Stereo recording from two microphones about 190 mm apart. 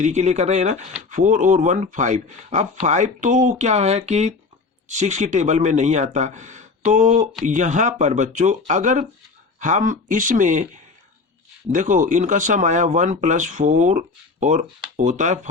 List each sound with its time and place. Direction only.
0.0 s speech: 40° right (ahead or behind)
11.7 s speech: 40° right (ahead or behind)